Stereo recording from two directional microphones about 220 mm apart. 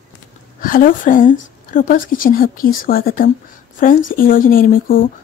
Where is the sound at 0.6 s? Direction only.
40° left (ahead or behind).